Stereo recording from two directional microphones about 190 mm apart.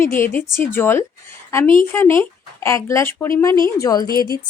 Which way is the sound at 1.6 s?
45° left (ahead or behind).